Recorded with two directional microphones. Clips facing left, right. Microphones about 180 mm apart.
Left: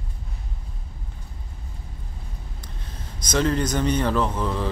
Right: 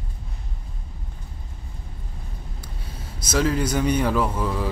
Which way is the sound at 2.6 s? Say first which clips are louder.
Right 1 dB; 10° right (ahead or behind).